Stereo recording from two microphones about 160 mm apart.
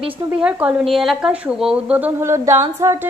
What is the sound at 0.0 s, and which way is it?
Speech, 5° right (ahead or behind).